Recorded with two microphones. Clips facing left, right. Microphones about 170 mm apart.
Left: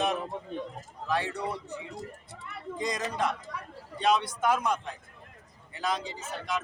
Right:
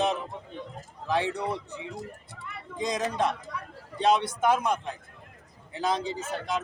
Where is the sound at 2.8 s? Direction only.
25° right (ahead or behind).